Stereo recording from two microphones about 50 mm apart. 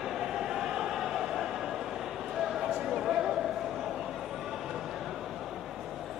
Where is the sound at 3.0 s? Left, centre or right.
Centre.